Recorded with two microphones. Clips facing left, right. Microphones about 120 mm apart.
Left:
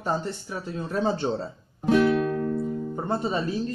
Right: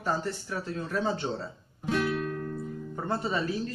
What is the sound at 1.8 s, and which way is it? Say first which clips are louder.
Music: left 8 dB; 90° left.